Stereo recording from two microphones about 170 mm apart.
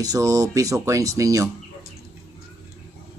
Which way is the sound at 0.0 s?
20° right (ahead or behind).